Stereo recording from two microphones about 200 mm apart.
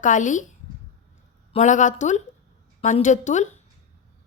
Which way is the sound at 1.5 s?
40° left (ahead or behind).